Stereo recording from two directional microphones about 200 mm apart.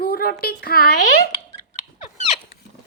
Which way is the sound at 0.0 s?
50° left (ahead or behind).